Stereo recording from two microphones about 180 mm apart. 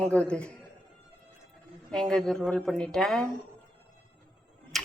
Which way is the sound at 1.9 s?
5° left (ahead or behind).